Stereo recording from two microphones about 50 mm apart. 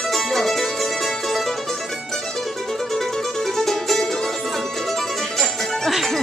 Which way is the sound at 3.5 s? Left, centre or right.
Centre.